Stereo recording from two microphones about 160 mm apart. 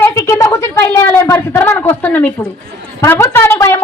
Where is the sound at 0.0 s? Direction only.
15° left (ahead or behind).